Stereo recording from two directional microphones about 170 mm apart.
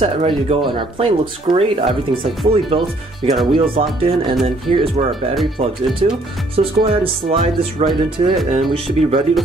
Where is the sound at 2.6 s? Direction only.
30° right (ahead or behind).